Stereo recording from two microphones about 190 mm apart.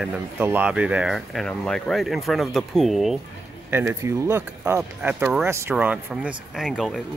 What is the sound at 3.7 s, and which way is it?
Speech, 10° right (ahead or behind).